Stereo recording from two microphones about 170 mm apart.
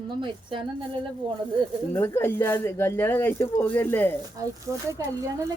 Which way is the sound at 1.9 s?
15° left (ahead or behind).